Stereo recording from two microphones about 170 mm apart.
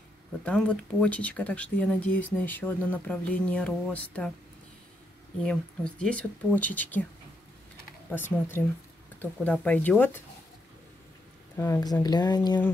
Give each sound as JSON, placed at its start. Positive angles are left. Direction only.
{"t": 0.5, "sound": "speech", "side_deg": 5}
{"t": 5.4, "sound": "speech", "side_deg": 5}
{"t": 8.1, "sound": "speech", "side_deg": 15}
{"t": 11.5, "sound": "speech", "side_deg": 15}